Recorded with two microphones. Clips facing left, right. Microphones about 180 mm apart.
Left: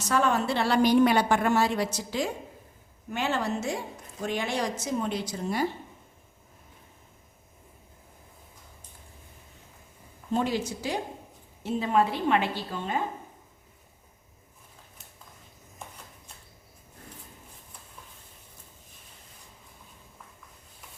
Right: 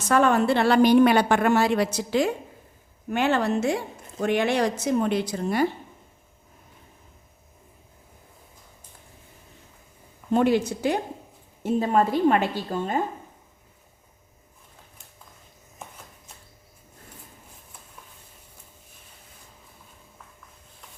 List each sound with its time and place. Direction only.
0.1 s a woman's voice: 60° right (ahead or behind)
10.3 s a woman's voice: 60° right (ahead or behind)
11.6 s a woman's voice: 45° right (ahead or behind)